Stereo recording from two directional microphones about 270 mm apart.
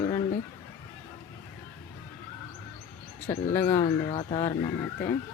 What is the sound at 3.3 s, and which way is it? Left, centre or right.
Speech, centre.